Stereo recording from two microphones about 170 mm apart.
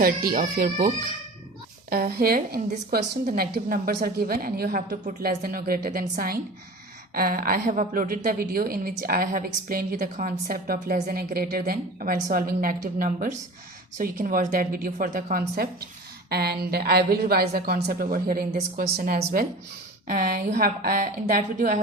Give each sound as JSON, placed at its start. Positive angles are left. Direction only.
{"t": 0.0, "sound": "a woman's voice", "side_deg": -60}
{"t": 1.9, "sound": "a woman's voice", "side_deg": -65}